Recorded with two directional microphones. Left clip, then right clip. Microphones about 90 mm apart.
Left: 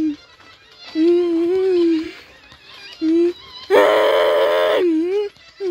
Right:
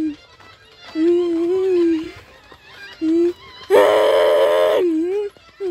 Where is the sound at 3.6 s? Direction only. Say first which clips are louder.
Even; 5° left (ahead or behind).